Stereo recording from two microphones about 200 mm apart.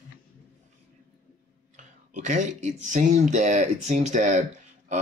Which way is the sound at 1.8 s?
40° right (ahead or behind).